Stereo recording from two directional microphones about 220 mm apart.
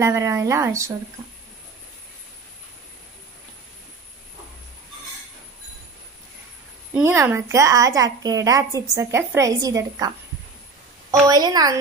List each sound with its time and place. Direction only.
0.0 s a woman's voice: 15° right (ahead or behind)
7.0 s a woman's voice: 10° right (ahead or behind)